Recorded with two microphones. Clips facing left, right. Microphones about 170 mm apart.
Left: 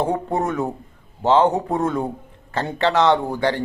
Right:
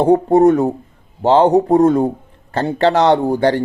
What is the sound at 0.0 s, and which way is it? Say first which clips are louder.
A man's voice: right 11 dB; 35° right (ahead or behind).